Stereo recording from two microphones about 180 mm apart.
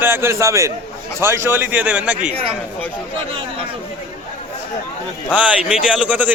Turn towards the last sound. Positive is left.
turn(degrees=-5)  # may be behind; listen again after turning